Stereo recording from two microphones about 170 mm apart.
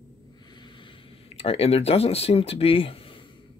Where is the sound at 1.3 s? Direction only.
35° left (ahead or behind).